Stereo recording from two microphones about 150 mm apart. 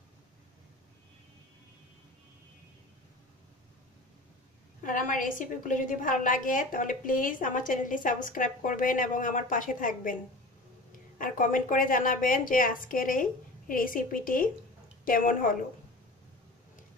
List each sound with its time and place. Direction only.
4.8 s a woman's voice: 60° left (ahead or behind)
11.1 s a woman's voice: 65° left (ahead or behind)